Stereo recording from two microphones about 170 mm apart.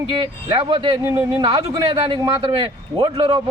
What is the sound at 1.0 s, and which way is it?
Speech, 15° right (ahead or behind).